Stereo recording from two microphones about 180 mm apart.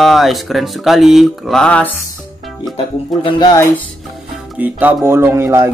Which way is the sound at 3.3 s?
20° left (ahead or behind).